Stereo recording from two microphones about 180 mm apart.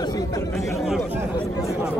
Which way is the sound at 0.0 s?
20° left (ahead or behind).